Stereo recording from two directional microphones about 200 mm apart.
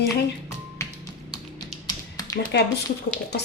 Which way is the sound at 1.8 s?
20° left (ahead or behind).